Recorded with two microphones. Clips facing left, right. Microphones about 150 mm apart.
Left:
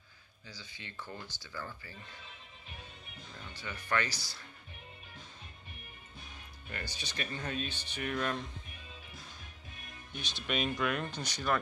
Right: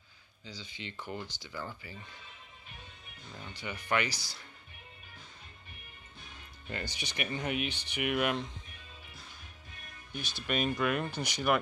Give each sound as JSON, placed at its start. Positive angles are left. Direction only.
{"t": 0.5, "sound": "speech", "side_deg": -20}
{"t": 3.5, "sound": "speech", "side_deg": -15}
{"t": 6.7, "sound": "speech", "side_deg": -20}
{"t": 10.1, "sound": "speech", "side_deg": -5}